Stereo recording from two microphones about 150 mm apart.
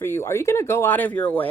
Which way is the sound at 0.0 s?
15° left (ahead or behind).